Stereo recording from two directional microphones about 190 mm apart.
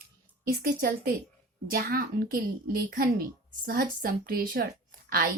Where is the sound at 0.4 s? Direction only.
50° right (ahead or behind).